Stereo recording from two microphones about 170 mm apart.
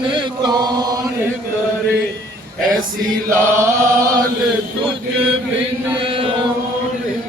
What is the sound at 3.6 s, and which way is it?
Chant, 15° right (ahead or behind).